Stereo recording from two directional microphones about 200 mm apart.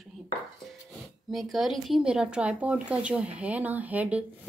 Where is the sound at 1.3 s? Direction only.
Centre (ahead or behind).